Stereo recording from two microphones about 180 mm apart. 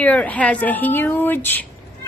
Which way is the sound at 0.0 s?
10° left (ahead or behind).